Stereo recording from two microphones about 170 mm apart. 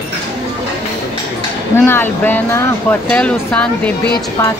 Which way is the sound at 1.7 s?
10° left (ahead or behind).